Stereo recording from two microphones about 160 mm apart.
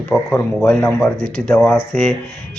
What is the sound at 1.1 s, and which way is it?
Speech, 40° left (ahead or behind).